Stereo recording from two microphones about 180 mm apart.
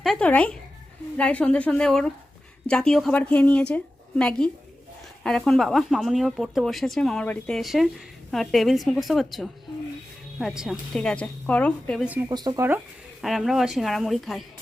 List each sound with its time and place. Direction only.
0.0 s speech: 5° left (ahead or behind)
12.3 s speech: 25° right (ahead or behind)
13.2 s speech: centre (ahead or behind)